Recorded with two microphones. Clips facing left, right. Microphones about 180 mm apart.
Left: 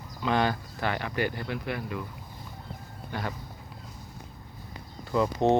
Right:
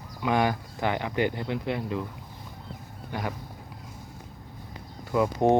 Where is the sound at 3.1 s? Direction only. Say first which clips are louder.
Right 2 dB; 15° right (ahead or behind).